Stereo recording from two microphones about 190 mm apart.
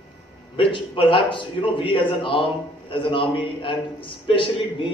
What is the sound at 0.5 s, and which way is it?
A man's voice, 25° left (ahead or behind).